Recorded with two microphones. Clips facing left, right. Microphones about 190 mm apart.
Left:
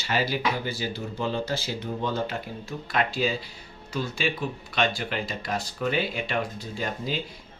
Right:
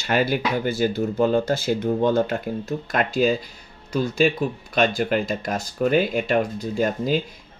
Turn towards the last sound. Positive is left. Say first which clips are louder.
# right 9 dB
turn(degrees=-45)  # may be behind; listen again after turning